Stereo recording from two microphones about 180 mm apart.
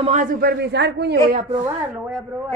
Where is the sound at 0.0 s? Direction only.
45° right (ahead or behind); by 1.2 s 70° right (ahead or behind).